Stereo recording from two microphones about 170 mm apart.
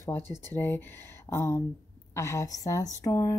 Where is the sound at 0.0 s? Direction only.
15° left (ahead or behind).